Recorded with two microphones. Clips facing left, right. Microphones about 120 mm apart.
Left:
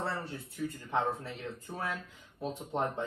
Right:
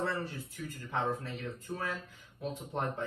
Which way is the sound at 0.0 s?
30° left (ahead or behind).